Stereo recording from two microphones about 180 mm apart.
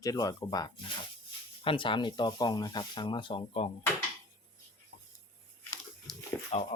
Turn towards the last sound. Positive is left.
turn(degrees=40)  # may be behind; listen again after turning